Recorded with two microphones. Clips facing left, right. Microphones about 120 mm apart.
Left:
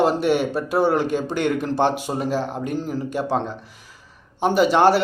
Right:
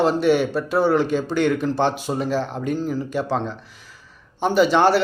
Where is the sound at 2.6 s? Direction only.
50° left (ahead or behind).